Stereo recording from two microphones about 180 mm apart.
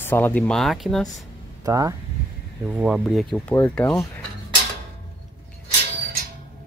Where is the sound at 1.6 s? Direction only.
20° right (ahead or behind).